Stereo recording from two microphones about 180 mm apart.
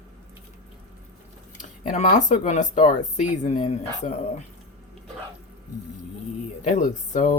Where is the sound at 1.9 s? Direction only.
45° left (ahead or behind).